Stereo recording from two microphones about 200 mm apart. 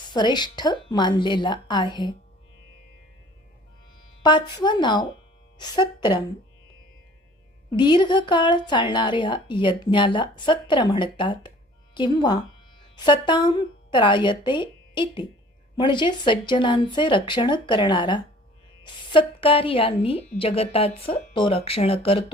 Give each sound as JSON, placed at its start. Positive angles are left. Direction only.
{"t": 0.1, "sound": "speech", "side_deg": 20}
{"t": 4.2, "sound": "speech", "side_deg": 20}
{"t": 7.7, "sound": "speech", "side_deg": 25}